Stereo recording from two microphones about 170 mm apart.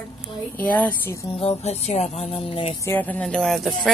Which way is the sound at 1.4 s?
40° left (ahead or behind).